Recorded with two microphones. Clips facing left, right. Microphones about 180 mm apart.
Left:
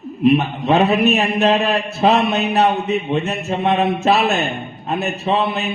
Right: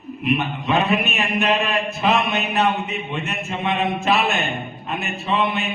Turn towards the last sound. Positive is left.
turn(degrees=40)  # may be behind; listen again after turning